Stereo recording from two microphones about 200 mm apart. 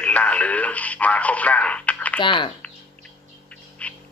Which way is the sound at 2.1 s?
25° left (ahead or behind).